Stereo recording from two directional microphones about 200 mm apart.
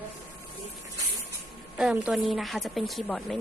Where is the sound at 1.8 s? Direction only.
5° right (ahead or behind).